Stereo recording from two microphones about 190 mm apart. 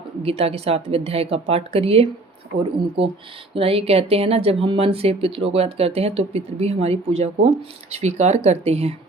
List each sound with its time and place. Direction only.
0.2 s speech: 30° right (ahead or behind)